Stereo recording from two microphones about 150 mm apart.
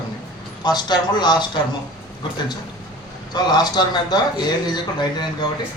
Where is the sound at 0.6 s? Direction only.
30° left (ahead or behind).